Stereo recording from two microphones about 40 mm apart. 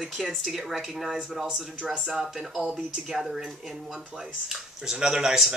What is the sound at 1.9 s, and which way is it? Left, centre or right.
Speech, centre.